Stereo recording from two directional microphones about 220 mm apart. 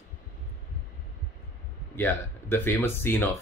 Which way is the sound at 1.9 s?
10° left (ahead or behind).